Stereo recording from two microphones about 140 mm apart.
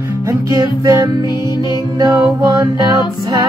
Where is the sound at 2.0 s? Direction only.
25° right (ahead or behind).